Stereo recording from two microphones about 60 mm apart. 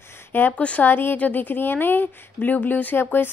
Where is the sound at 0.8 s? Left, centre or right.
Left.